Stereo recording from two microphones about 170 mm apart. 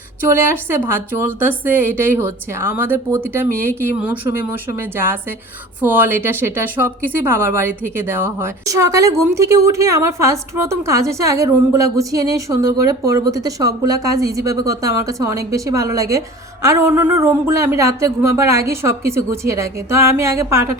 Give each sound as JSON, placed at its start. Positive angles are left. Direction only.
{"t": 0.3, "sound": "a woman's voice", "side_deg": -15}
{"t": 5.8, "sound": "a woman's voice", "side_deg": -10}